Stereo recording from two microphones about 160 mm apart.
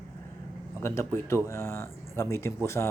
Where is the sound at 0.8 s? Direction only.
15° left (ahead or behind).